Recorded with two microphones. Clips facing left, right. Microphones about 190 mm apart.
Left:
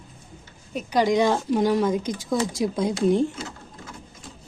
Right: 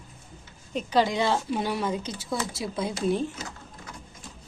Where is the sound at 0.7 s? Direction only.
15° left (ahead or behind).